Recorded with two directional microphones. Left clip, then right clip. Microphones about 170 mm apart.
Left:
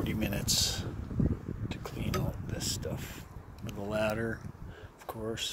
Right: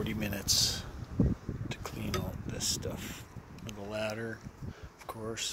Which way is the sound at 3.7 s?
50° left (ahead or behind).